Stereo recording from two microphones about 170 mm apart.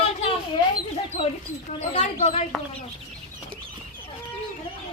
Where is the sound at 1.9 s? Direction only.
40° left (ahead or behind).